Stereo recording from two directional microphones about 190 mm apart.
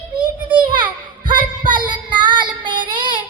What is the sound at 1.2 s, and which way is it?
Child singing, 25° right (ahead or behind).